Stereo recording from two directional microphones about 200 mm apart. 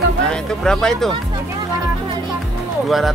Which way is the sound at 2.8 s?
Centre (ahead or behind).